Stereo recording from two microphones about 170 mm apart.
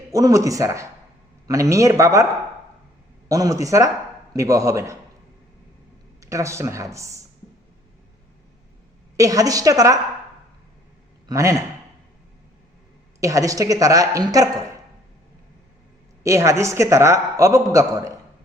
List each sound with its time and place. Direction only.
0.1 s a man's voice: 20° right (ahead or behind)
3.2 s speech: 20° right (ahead or behind)
6.1 s a man's voice: 20° right (ahead or behind)
9.1 s speech: 20° right (ahead or behind)
11.3 s speech: 20° right (ahead or behind)
13.1 s speech: 20° right (ahead or behind)
16.2 s a man's voice: 15° right (ahead or behind)